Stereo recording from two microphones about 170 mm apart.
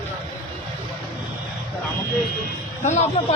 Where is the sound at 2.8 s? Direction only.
40° left (ahead or behind).